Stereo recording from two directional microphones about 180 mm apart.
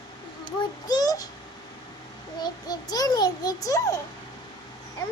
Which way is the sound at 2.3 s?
20° left (ahead or behind).